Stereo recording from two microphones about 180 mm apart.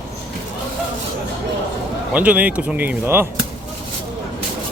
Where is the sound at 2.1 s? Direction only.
10° right (ahead or behind).